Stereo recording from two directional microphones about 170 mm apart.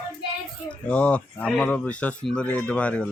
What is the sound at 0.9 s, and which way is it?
Speech, 10° left (ahead or behind).